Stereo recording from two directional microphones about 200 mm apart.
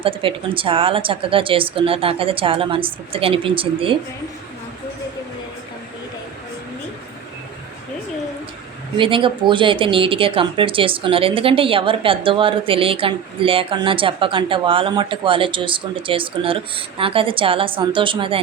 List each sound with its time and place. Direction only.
0.0 s speech: 25° right (ahead or behind)
9.0 s speech: 25° right (ahead or behind)